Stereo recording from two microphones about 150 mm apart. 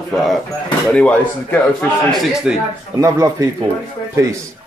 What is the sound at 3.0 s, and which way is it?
Speech, 20° right (ahead or behind).